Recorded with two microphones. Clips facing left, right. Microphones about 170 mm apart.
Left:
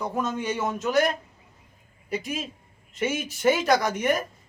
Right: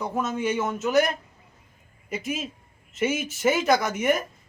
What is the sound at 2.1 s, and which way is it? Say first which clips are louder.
Speech: even; 5° right (ahead or behind).